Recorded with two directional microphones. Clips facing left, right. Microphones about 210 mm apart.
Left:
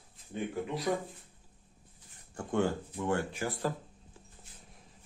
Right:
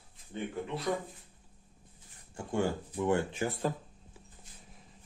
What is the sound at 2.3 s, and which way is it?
Speech, 10° right (ahead or behind).